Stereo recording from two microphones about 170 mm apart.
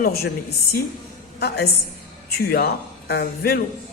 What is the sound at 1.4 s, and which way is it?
A woman's voice, 70° left (ahead or behind).